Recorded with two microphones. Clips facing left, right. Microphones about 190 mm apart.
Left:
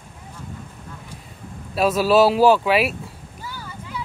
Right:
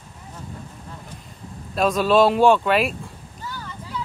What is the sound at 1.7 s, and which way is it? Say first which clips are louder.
Speech: left 1 dB; 5° left (ahead or behind).